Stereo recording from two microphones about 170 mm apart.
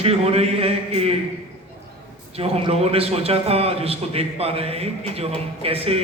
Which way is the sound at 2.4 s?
35° right (ahead or behind).